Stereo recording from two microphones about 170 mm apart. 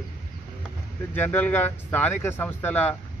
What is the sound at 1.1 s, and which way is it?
Speech, 10° left (ahead or behind).